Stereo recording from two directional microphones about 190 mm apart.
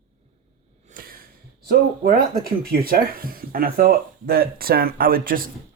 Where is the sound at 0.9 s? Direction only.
50° right (ahead or behind).